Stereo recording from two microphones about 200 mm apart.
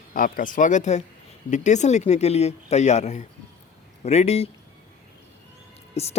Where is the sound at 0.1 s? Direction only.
45° left (ahead or behind).